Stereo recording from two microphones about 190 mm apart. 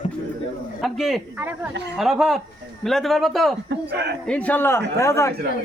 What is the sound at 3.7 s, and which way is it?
Speech, 60° right (ahead or behind).